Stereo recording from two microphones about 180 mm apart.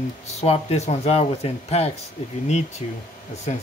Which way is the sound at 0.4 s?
35° left (ahead or behind).